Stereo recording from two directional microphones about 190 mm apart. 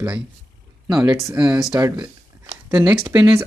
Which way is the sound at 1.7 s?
20° right (ahead or behind).